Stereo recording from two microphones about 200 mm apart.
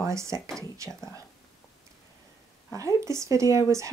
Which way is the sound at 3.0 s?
15° right (ahead or behind).